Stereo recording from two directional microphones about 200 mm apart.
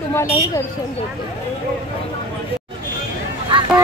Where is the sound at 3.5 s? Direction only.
25° right (ahead or behind).